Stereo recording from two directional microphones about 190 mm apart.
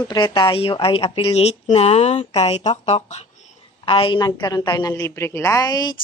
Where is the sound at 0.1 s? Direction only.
25° left (ahead or behind).